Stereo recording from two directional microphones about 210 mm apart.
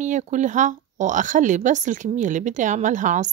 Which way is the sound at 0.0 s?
35° right (ahead or behind).